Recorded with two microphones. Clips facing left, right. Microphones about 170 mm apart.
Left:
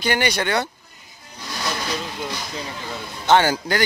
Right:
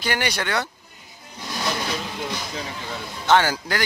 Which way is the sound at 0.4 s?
20° left (ahead or behind).